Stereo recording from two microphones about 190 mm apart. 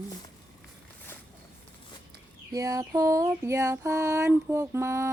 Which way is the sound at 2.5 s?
20° right (ahead or behind).